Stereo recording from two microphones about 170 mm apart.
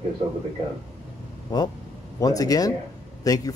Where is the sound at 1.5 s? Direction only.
25° left (ahead or behind).